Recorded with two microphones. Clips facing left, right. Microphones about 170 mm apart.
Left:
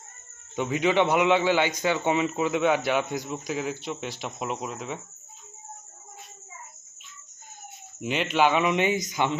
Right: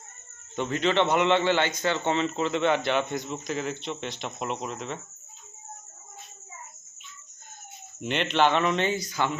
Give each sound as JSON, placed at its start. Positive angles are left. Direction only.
{"t": 0.5, "sound": "a man's voice", "side_deg": 10}
{"t": 8.0, "sound": "a man's voice", "side_deg": 5}